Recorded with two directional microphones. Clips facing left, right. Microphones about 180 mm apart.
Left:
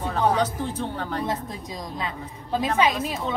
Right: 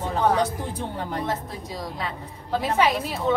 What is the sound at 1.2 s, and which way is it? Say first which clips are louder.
A woman's voice: even; 15° left (ahead or behind).